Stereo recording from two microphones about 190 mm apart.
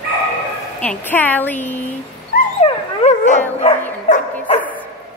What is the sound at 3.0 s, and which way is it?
Dog, 40° left (ahead or behind).